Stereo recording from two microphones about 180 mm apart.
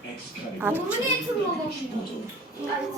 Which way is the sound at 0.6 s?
10° right (ahead or behind).